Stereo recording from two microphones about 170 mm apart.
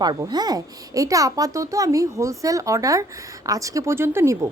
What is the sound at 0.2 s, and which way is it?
A child's voice, 25° right (ahead or behind).